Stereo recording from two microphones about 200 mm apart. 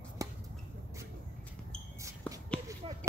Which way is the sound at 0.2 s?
15° right (ahead or behind).